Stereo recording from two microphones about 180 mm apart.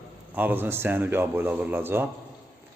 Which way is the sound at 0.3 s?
10° right (ahead or behind).